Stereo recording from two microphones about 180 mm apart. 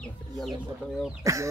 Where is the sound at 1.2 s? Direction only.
20° right (ahead or behind).